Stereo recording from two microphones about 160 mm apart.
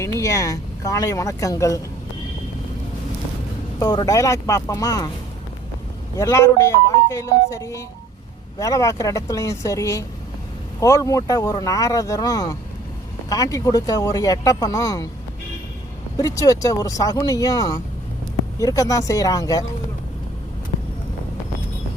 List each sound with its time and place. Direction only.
0.0 s speech: 20° left (ahead or behind)
3.8 s speech: 25° left (ahead or behind)
6.1 s speech: 20° left (ahead or behind)
16.1 s speech: 20° left (ahead or behind)